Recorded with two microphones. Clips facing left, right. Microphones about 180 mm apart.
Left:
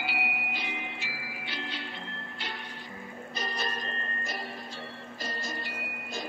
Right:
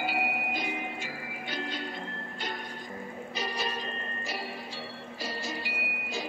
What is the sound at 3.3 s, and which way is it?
Music, 10° right (ahead or behind).